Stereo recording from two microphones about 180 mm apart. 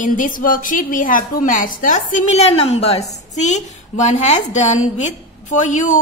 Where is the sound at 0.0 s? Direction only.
50° left (ahead or behind).